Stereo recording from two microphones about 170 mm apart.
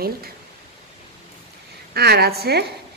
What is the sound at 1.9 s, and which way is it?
Speech, 70° right (ahead or behind).